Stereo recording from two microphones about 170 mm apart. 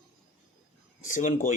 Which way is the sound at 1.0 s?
50° left (ahead or behind).